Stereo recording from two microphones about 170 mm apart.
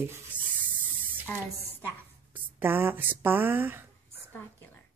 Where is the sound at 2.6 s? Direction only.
10° right (ahead or behind).